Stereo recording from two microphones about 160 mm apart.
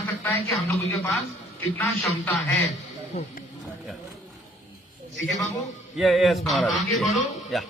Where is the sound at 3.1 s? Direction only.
45° left (ahead or behind).